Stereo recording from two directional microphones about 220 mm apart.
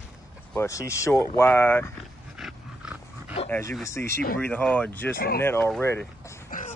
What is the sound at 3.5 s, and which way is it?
Speech, 10° left (ahead or behind).